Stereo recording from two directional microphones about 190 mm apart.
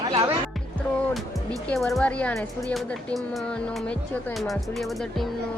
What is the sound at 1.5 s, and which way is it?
Speech, 5° left (ahead or behind).